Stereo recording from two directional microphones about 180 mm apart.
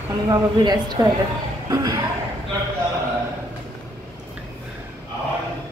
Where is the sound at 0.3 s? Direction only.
25° right (ahead or behind).